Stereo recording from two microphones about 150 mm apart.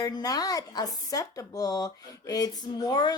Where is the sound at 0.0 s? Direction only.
25° left (ahead or behind).